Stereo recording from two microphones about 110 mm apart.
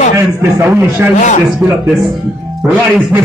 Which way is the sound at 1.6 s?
Centre (ahead or behind).